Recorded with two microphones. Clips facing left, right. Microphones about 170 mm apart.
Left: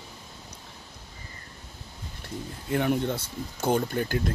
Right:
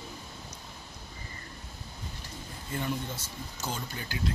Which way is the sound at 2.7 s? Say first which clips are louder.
Left 9 dB; 65° left (ahead or behind).